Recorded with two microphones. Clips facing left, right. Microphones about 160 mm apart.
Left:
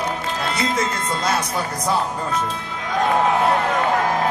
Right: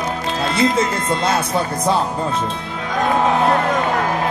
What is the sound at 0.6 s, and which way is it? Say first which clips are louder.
Speech: right 7 dB; 30° right (ahead or behind).